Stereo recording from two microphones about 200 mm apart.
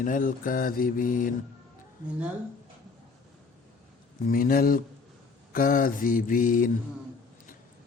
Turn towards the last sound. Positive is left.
turn(degrees=40)  # may be behind; listen again after turning